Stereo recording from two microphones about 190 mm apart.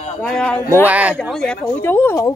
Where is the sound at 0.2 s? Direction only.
5° left (ahead or behind).